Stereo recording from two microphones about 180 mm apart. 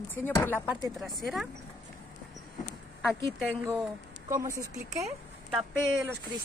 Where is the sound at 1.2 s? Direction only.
Centre (ahead or behind).